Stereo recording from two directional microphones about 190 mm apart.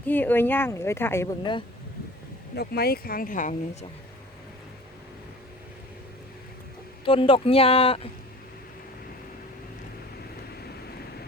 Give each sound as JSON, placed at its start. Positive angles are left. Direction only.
{"t": 0.0, "sound": "speech", "side_deg": 10}
{"t": 2.6, "sound": "speech", "side_deg": 55}
{"t": 7.0, "sound": "speech", "side_deg": 30}